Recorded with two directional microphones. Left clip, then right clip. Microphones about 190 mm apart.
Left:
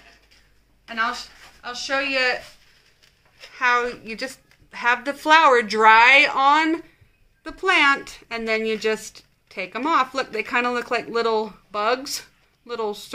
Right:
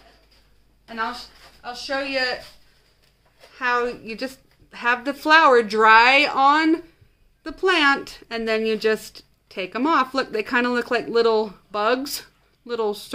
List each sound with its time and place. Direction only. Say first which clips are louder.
1.6 s a woman's voice: left 2 dB; 15° right (ahead or behind)
3.5 s a woman's voice: left 2 dB; 20° right (ahead or behind); by 13.1 s 35° right (ahead or behind)